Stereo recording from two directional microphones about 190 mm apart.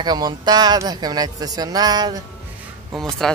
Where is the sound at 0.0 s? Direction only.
20° right (ahead or behind).